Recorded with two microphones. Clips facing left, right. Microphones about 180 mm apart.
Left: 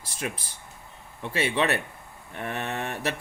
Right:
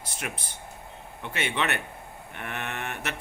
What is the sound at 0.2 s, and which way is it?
Speech, 30° left (ahead or behind).